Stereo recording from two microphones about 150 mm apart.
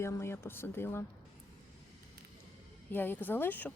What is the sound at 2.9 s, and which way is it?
Speech, 15° left (ahead or behind).